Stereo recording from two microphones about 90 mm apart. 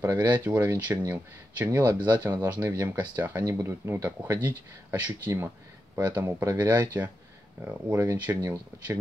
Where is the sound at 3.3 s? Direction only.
35° right (ahead or behind).